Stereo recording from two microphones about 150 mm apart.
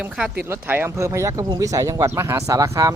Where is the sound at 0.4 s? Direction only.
15° right (ahead or behind).